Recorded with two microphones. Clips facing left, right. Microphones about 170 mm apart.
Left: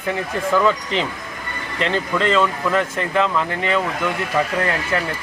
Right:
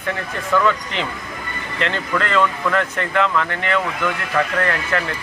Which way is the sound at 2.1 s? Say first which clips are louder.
Left 1 dB; 25° left (ahead or behind).